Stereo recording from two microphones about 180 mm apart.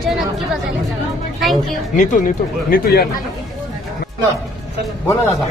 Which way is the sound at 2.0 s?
45° left (ahead or behind).